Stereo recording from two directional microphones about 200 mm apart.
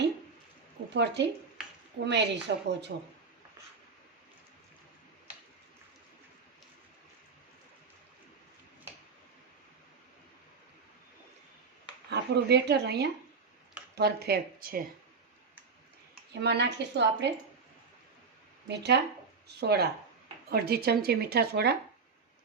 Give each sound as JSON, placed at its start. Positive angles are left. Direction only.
{"t": 0.9, "sound": "a woman's voice", "side_deg": -60}
{"t": 12.1, "sound": "a woman's voice", "side_deg": -55}
{"t": 16.3, "sound": "a woman's voice", "side_deg": -60}
{"t": 18.7, "sound": "a woman's voice", "side_deg": -55}